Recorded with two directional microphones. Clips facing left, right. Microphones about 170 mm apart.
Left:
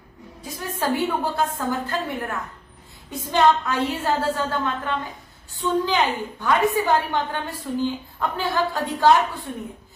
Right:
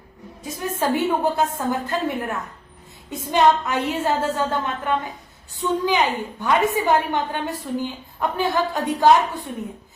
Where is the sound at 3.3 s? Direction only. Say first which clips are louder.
Right 1 dB; 20° right (ahead or behind).